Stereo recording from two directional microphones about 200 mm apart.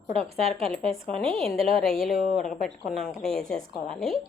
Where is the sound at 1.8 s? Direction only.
Centre (ahead or behind).